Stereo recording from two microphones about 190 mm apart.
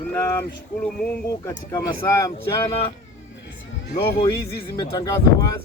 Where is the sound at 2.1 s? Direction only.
15° left (ahead or behind).